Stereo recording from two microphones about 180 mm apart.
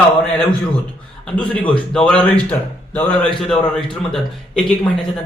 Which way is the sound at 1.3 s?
5° left (ahead or behind).